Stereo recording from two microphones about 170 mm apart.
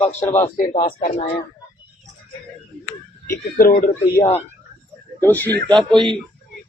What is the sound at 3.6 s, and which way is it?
Speech, 55° left (ahead or behind).